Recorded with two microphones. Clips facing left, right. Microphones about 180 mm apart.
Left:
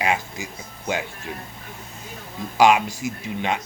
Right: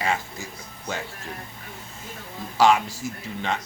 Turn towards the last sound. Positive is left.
turn(degrees=15)  # may be behind; listen again after turning